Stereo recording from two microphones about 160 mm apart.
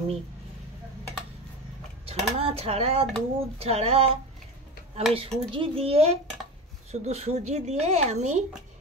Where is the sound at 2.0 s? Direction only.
40° right (ahead or behind).